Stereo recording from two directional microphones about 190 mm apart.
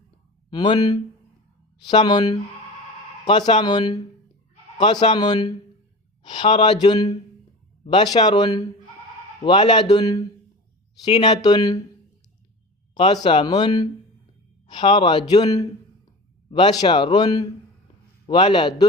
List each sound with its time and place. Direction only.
0.5 s a man's voice: 20° left (ahead or behind)
11.2 s a man's voice: 20° left (ahead or behind)
12.9 s a sound: 25° left (ahead or behind)
13.2 s a man's voice: 20° left (ahead or behind)
14.7 s a man's voice: 25° left (ahead or behind)